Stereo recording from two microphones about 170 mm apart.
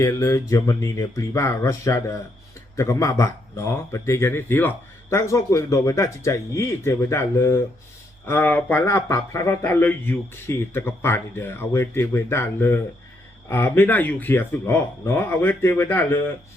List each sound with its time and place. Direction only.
0.0 s speech: 20° left (ahead or behind)